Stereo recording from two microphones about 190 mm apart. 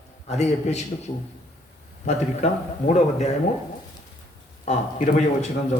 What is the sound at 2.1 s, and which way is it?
A man's voice, 35° left (ahead or behind).